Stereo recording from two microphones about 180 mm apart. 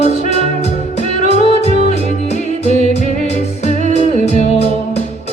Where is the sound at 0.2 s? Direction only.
40° left (ahead or behind).